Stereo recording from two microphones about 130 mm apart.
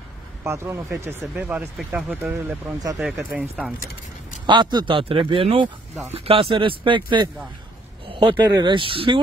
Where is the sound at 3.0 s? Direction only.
5° right (ahead or behind).